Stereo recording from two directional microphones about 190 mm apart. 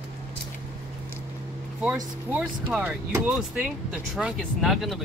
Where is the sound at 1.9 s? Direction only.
10° right (ahead or behind).